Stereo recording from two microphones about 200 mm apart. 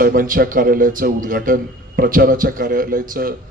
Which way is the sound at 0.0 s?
45° right (ahead or behind).